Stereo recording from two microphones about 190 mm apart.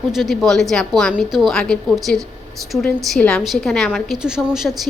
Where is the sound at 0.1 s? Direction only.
Centre (ahead or behind).